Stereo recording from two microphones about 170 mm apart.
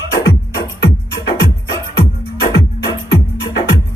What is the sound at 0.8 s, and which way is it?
Music, 75° left (ahead or behind).